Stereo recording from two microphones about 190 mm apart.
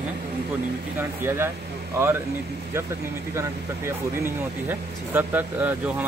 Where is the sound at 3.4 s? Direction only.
15° right (ahead or behind).